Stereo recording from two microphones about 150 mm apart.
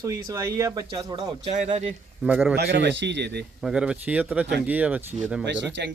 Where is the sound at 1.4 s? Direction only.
45° right (ahead or behind).